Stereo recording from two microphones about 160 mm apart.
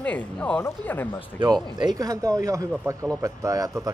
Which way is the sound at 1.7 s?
25° right (ahead or behind).